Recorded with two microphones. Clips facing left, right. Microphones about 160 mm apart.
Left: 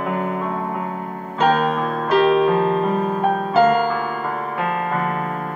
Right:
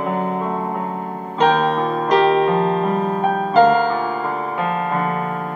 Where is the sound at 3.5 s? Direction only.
5° left (ahead or behind).